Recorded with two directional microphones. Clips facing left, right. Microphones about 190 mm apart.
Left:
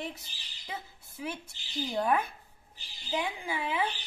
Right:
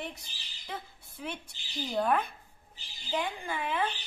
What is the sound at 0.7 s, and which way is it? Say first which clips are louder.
Squawk: even; 5° left (ahead or behind).